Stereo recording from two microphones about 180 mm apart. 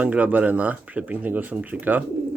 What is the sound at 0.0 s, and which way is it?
Speech, 10° right (ahead or behind).